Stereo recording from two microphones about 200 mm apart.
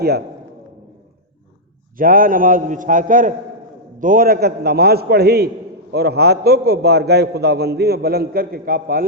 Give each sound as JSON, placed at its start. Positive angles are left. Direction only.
{"t": 2.0, "sound": "a man's voice", "side_deg": -45}